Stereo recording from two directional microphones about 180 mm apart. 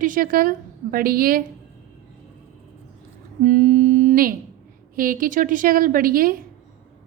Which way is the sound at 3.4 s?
45° right (ahead or behind).